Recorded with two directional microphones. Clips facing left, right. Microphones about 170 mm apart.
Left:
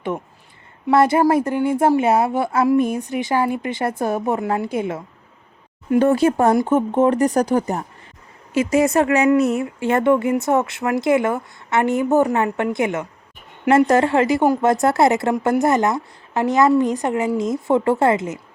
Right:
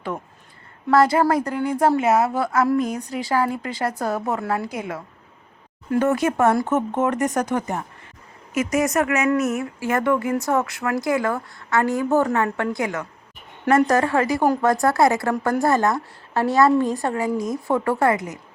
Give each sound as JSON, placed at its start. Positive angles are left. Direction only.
{"t": 0.9, "sound": "a woman's voice", "side_deg": 25}